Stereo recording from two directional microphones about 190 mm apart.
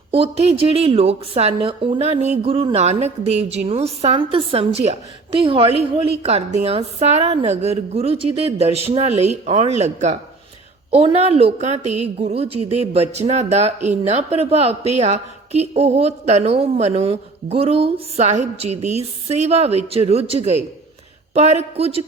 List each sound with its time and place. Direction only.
0.1 s a woman's voice: 30° right (ahead or behind)